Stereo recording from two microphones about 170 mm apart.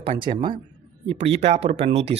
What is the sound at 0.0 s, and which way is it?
Speech, 30° right (ahead or behind).